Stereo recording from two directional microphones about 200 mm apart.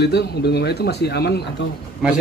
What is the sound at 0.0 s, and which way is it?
Speech, 55° left (ahead or behind).